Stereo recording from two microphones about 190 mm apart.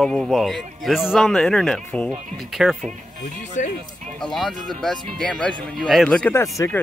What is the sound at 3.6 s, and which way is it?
Speech, 40° left (ahead or behind).